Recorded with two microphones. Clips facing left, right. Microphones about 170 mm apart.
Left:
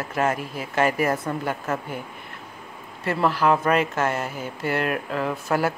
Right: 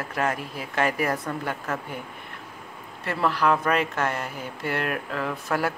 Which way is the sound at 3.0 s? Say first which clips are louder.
Left 2 dB; centre (ahead or behind).